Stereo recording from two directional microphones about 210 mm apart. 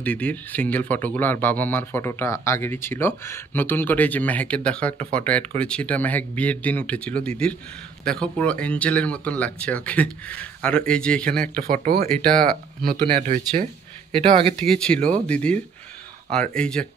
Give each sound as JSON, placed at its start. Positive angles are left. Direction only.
{"t": 0.0, "sound": "speech", "side_deg": 5}
{"t": 11.4, "sound": "speech", "side_deg": -40}
{"t": 12.1, "sound": "speech", "side_deg": 5}
{"t": 12.8, "sound": "speech", "side_deg": -45}
{"t": 14.1, "sound": "speech", "side_deg": -25}
{"t": 14.6, "sound": "speech", "side_deg": 5}